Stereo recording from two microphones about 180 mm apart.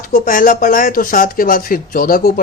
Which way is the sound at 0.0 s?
50° left (ahead or behind).